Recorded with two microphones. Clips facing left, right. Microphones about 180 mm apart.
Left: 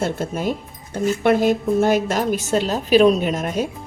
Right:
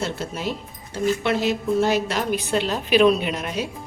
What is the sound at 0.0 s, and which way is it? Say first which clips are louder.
A woman's voice: left 5 dB; 50° left (ahead or behind).